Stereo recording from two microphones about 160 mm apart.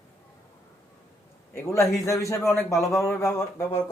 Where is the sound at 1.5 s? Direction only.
20° left (ahead or behind).